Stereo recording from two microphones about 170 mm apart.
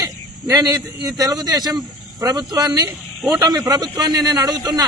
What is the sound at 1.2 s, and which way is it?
A man's voice, 20° right (ahead or behind).